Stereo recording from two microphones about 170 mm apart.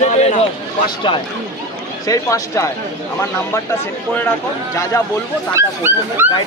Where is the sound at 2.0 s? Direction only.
20° left (ahead or behind).